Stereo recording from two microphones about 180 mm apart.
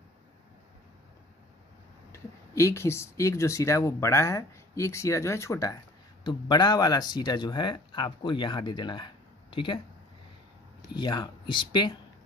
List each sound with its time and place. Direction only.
2.1 s speech: 15° left (ahead or behind)
10.9 s speech: 25° left (ahead or behind)